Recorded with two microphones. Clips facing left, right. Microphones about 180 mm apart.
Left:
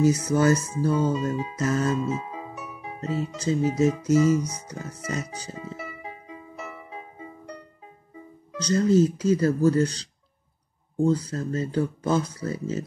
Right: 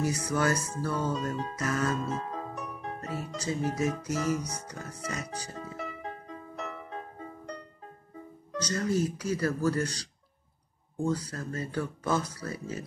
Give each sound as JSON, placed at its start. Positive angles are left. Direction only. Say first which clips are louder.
{"t": 0.0, "sound": "speech", "louder": "left 8 dB", "side_deg": 20}
{"t": 1.1, "sound": "speech", "louder": "left 5 dB", "side_deg": 5}
{"t": 1.6, "sound": "speech", "louder": "left 6 dB", "side_deg": 25}
{"t": 2.0, "sound": "music", "louder": "left 5 dB", "side_deg": 5}
{"t": 3.0, "sound": "speech", "louder": "left 11 dB", "side_deg": 20}
{"t": 4.3, "sound": "speech", "louder": "left 7 dB", "side_deg": 0}
{"t": 4.6, "sound": "speech", "louder": "left 4 dB", "side_deg": 20}
{"t": 5.8, "sound": "music", "louder": "even", "side_deg": 5}
{"t": 8.5, "sound": "speech", "louder": "left 9 dB", "side_deg": 20}